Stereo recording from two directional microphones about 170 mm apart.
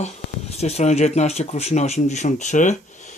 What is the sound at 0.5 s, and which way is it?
Speech, 40° left (ahead or behind).